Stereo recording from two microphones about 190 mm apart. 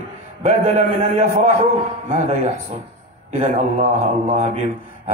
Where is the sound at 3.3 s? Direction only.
40° right (ahead or behind).